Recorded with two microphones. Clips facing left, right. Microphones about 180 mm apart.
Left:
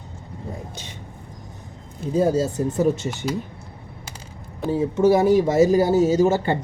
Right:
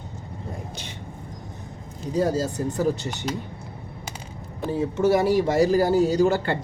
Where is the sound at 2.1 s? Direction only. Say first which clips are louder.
Left 4 dB; 25° left (ahead or behind).